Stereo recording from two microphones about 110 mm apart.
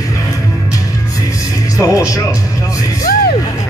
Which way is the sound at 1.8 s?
30° left (ahead or behind).